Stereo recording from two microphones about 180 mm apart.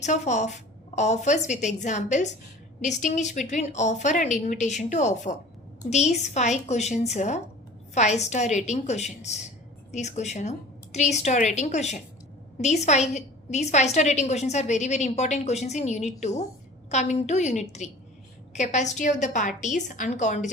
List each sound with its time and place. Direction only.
0.0 s a woman's voice: 40° left (ahead or behind)